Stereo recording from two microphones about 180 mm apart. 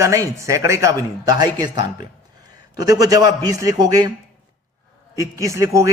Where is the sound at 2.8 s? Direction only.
20° right (ahead or behind).